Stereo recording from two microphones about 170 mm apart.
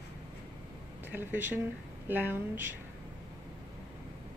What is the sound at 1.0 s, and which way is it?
Speech, 10° right (ahead or behind).